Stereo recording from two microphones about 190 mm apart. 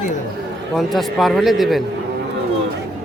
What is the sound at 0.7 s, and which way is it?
A man's voice, centre (ahead or behind).